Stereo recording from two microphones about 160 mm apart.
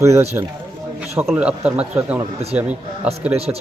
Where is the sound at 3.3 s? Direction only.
40° right (ahead or behind).